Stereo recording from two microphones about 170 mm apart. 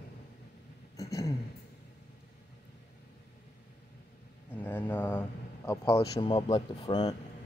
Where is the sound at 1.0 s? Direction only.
20° left (ahead or behind).